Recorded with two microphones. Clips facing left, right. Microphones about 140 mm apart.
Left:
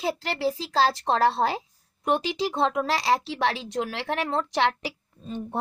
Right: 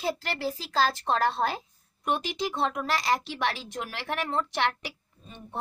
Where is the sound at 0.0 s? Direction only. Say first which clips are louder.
Left 4 dB; 25° left (ahead or behind).